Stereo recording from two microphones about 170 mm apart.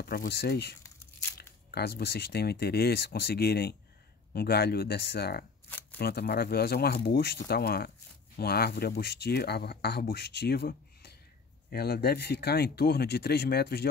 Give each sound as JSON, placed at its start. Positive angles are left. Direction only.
{"t": 0.0, "sound": "speech", "side_deg": 65}
{"t": 5.7, "sound": "shuffling cards", "side_deg": 10}
{"t": 5.9, "sound": "speech", "side_deg": 65}